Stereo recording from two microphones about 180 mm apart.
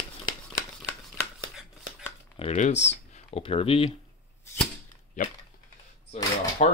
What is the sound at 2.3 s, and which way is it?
Speech, 35° left (ahead or behind).